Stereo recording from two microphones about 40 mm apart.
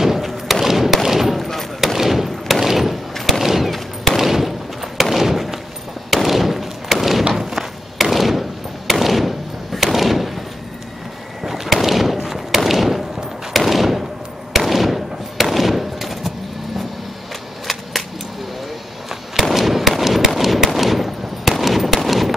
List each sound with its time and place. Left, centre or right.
0.0 s thump: centre
1.0 s gunshot: centre
4.2 s thump: centre
6.0 s fireworks: centre
7.3 s thump: centre
11.4 s a sound: centre
14.5 s fireworks: centre
19.3 s fireworks: centre